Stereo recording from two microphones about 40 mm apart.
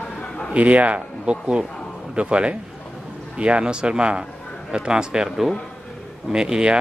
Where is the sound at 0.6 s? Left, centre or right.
Right; by 5.3 s centre.